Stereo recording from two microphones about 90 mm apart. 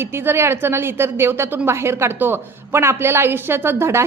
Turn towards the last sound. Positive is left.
turn(degrees=-30)  # may be behind; listen again after turning